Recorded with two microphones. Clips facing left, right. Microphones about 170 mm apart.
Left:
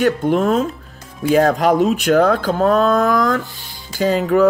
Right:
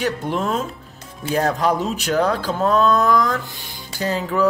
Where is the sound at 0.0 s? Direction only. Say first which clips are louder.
Left 7 dB; 50° left (ahead or behind).